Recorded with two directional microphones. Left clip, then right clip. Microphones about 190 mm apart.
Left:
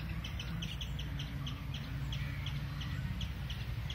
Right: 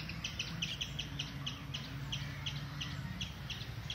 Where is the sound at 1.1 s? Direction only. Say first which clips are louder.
Right 3 dB; 40° right (ahead or behind).